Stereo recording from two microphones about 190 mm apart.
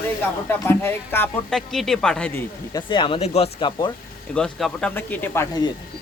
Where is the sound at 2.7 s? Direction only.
20° left (ahead or behind).